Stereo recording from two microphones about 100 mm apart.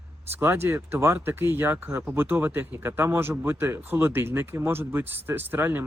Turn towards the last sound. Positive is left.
turn(degrees=-20)  # may be behind; listen again after turning